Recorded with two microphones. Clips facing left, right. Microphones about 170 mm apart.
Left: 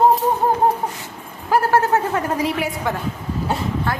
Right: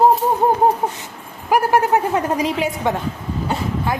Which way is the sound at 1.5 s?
15° right (ahead or behind).